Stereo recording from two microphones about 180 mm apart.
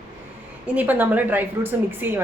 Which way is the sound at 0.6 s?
10° right (ahead or behind).